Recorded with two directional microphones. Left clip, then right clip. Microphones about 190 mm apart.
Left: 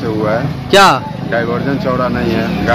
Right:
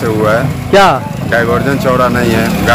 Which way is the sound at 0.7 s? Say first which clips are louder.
Even; 15° left (ahead or behind).